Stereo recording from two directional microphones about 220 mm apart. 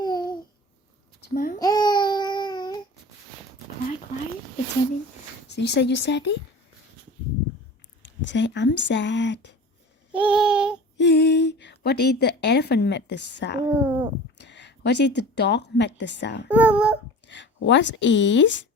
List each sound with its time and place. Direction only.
0.0 s babbling: 20° left (ahead or behind)
1.3 s a child's voice: 40° left (ahead or behind)
1.5 s babbling: 15° left (ahead or behind)
5.5 s speech: 50° left (ahead or behind)
8.0 s speech: 55° left (ahead or behind)
10.1 s a sound: 5° right (ahead or behind)
10.9 s a woman's voice: 50° left (ahead or behind)
13.7 s speech: 5° right (ahead or behind)
14.3 s a woman's voice: 50° left (ahead or behind)
16.5 s a sound: 5° right (ahead or behind)
17.2 s speech: 55° left (ahead or behind)